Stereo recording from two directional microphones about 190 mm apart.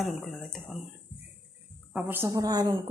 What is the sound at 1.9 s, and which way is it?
Speech, 10° right (ahead or behind).